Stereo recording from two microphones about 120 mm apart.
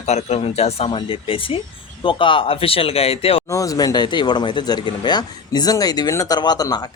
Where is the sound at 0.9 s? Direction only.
45° left (ahead or behind).